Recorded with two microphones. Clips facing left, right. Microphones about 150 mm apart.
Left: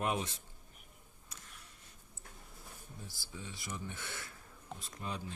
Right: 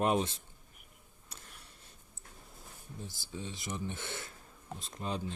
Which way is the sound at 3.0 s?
25° right (ahead or behind).